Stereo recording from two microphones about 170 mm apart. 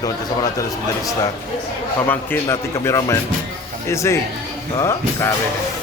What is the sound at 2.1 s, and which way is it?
A man's voice, 15° left (ahead or behind).